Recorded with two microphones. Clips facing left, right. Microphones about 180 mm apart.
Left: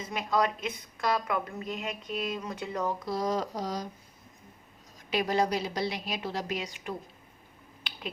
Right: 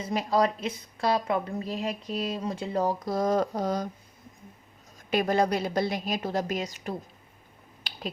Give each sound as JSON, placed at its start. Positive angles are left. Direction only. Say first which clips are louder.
{"t": 0.0, "sound": "a woman's voice", "louder": "right 4 dB", "side_deg": -35}
{"t": 5.1, "sound": "a woman's voice", "louder": "right 3 dB", "side_deg": -50}
{"t": 7.9, "sound": "finger snapping", "louder": "right 3 dB", "side_deg": -40}